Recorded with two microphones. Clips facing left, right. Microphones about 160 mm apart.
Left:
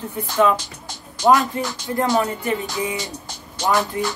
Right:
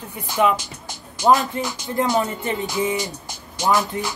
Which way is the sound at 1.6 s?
20° right (ahead or behind).